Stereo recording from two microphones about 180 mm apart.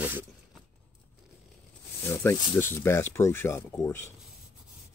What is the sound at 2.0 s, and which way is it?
Speech, 15° left (ahead or behind).